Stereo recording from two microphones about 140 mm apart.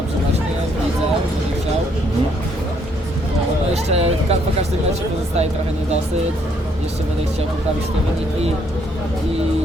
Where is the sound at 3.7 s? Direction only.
50° right (ahead or behind).